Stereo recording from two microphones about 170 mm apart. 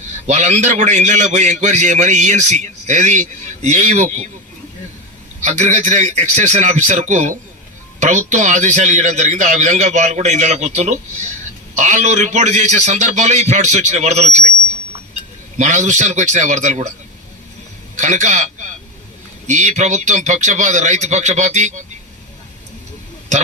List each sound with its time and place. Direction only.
0.3 s a man's voice: 45° right (ahead or behind)
5.5 s a man's voice: 45° right (ahead or behind)
15.5 s a man's voice: 45° right (ahead or behind)
17.9 s a man's voice: 45° right (ahead or behind)